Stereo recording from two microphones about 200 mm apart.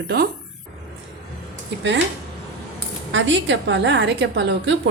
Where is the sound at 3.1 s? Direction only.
70° right (ahead or behind).